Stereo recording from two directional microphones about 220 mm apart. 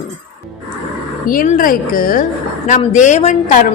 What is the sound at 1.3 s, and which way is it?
A woman's voice, 40° left (ahead or behind).